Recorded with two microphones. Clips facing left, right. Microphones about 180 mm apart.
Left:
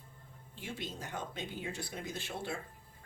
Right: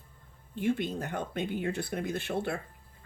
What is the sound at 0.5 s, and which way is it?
Speech, 55° right (ahead or behind).